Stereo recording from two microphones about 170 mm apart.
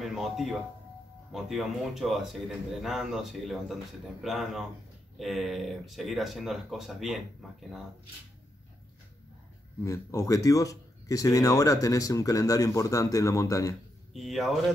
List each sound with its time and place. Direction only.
0.0 s speech: centre (ahead or behind)
9.8 s speech: 20° left (ahead or behind)
14.1 s speech: centre (ahead or behind)